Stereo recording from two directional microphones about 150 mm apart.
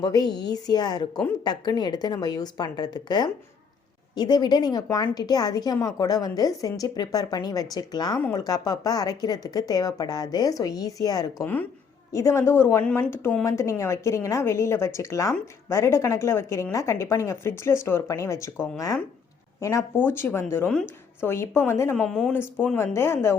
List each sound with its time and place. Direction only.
0.0 s a woman's voice: 25° left (ahead or behind)
11.4 s a woman's voice: 10° left (ahead or behind)